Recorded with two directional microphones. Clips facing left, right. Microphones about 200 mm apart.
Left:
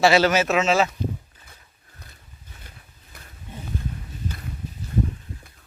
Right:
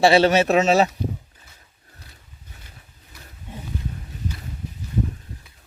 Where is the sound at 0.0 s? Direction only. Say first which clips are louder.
Right 2 dB; 30° right (ahead or behind).